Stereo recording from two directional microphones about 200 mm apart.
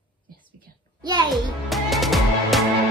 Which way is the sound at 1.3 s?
Centre (ahead or behind).